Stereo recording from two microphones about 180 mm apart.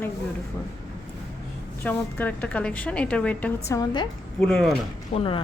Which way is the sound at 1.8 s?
10° left (ahead or behind).